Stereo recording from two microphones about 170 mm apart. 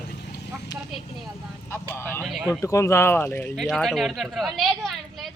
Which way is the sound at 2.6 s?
15° left (ahead or behind).